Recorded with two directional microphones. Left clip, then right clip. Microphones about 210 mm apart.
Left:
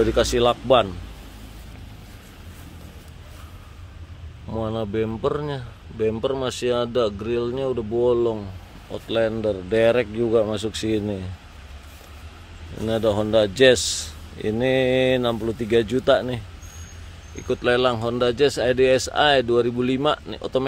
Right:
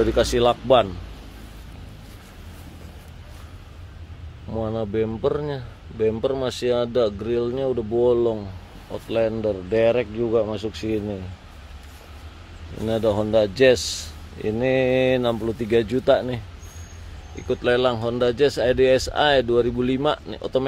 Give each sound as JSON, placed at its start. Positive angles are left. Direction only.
{"t": 0.0, "sound": "speech", "side_deg": 5}
{"t": 4.5, "sound": "a man's voice", "side_deg": 10}
{"t": 12.8, "sound": "a man's voice", "side_deg": 10}
{"t": 17.4, "sound": "a man's voice", "side_deg": 10}